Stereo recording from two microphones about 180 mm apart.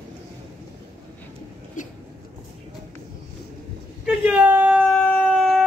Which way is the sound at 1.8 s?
45° left (ahead or behind).